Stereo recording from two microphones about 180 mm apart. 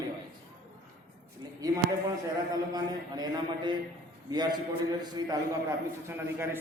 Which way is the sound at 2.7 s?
20° right (ahead or behind).